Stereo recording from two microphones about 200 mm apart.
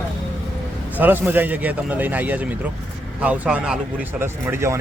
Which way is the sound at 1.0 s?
10° right (ahead or behind).